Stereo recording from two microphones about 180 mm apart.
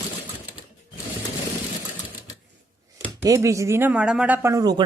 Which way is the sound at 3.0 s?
20° right (ahead or behind).